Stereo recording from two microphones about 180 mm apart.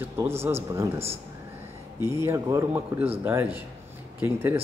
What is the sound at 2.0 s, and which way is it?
Speech, 15° right (ahead or behind).